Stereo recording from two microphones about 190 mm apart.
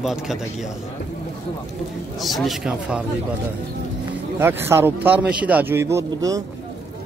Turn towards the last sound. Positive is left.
turn(degrees=-20)  # may be behind; listen again after turning